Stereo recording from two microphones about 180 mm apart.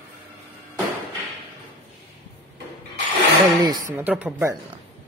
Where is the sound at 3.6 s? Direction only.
20° right (ahead or behind).